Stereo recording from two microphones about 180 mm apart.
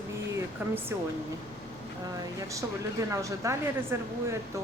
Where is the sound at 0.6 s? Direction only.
10° right (ahead or behind).